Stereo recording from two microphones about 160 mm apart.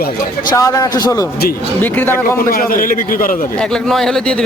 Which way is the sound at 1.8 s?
10° left (ahead or behind).